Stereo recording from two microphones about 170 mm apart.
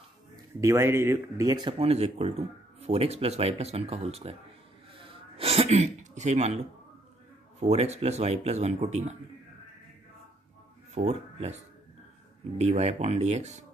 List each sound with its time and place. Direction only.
0.6 s speech: 15° right (ahead or behind); by 4.4 s 35° right (ahead or behind)
4.9 s a sound: 35° right (ahead or behind)
6.1 s speech: 40° right (ahead or behind)
7.6 s speech: 40° right (ahead or behind)
11.0 s speech: 40° right (ahead or behind)